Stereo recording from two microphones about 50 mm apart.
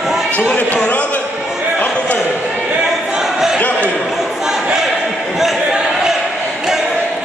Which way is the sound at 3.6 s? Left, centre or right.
Left.